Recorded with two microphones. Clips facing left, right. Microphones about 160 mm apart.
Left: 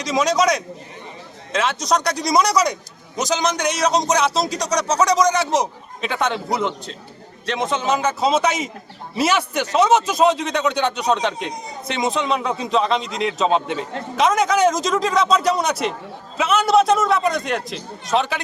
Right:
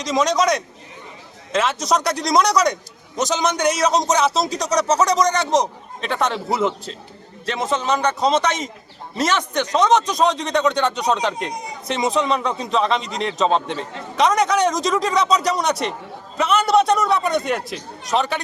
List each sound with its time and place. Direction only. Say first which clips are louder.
0.0 s a man's voice: even; centre (ahead or behind)